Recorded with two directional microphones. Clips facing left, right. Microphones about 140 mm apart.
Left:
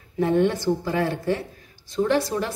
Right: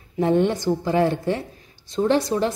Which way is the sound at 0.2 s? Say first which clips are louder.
Right 1 dB; 20° right (ahead or behind).